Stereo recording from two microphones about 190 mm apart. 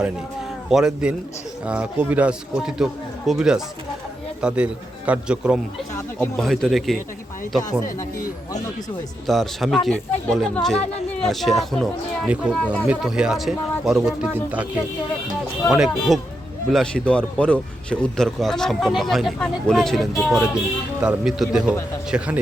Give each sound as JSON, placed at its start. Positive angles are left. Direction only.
{"t": 0.7, "sound": "speech", "side_deg": -5}
{"t": 9.2, "sound": "speech", "side_deg": 0}
{"t": 15.7, "sound": "speech", "side_deg": 0}